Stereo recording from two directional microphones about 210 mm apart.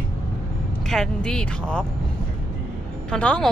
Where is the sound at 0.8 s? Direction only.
5° left (ahead or behind).